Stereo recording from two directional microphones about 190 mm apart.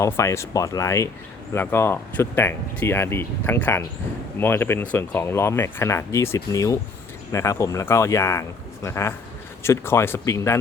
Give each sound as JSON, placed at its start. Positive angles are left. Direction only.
{"t": 0.0, "sound": "speech", "side_deg": 15}